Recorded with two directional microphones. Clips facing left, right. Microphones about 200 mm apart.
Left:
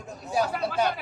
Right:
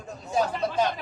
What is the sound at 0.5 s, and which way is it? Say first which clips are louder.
Speech: right 1 dB; 5° left (ahead or behind).